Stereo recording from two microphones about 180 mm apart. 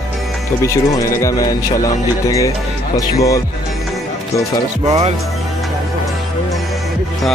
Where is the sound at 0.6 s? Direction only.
15° left (ahead or behind).